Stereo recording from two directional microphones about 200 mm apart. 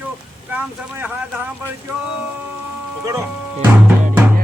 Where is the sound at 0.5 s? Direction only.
10° right (ahead or behind).